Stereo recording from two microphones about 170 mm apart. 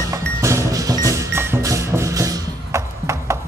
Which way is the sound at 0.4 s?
15° right (ahead or behind).